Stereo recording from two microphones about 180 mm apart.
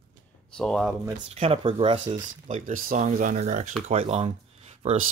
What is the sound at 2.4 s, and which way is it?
Speech, 45° right (ahead or behind).